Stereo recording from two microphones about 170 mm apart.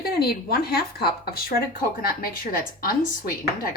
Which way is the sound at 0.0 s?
65° left (ahead or behind).